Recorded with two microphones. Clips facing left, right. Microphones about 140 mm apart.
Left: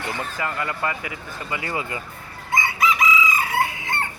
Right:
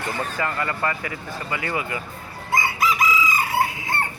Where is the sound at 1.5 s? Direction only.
25° left (ahead or behind).